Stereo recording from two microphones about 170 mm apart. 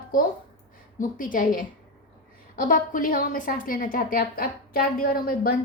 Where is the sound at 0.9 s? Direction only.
50° left (ahead or behind).